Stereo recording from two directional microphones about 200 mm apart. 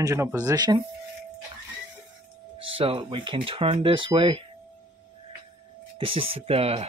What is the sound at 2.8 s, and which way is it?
Speech, 25° right (ahead or behind).